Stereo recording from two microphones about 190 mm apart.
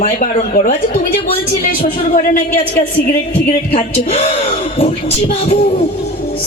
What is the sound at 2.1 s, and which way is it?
Speech, 45° left (ahead or behind).